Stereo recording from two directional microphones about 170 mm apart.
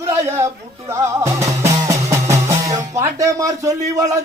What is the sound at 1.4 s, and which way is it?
Music, 15° right (ahead or behind).